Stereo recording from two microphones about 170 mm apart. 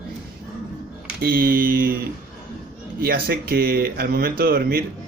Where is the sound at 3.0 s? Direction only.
65° right (ahead or behind).